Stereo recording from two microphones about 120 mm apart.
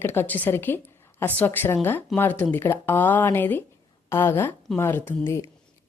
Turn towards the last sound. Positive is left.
turn(degrees=20)  # may be behind; listen again after turning